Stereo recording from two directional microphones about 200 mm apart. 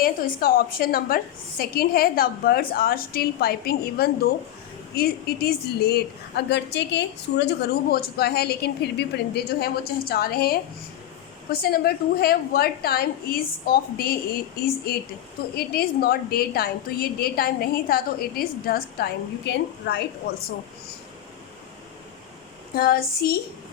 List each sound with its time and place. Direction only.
0.0 s a woman's voice: 45° left (ahead or behind)
15.5 s a woman's voice: 50° left (ahead or behind)
22.7 s a woman's voice: 45° left (ahead or behind)